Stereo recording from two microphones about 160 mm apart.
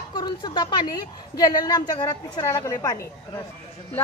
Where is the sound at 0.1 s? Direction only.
25° left (ahead or behind).